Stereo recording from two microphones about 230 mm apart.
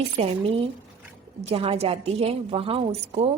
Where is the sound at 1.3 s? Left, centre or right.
Right.